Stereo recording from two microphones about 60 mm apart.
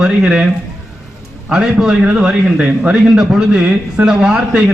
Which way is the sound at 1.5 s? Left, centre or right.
Centre.